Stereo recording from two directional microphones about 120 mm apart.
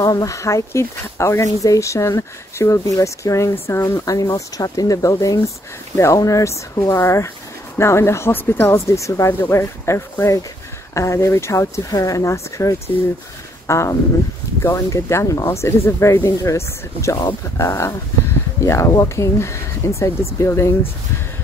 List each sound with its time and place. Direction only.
0.0 s speech: 30° left (ahead or behind)